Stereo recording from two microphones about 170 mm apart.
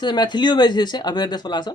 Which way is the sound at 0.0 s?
25° left (ahead or behind).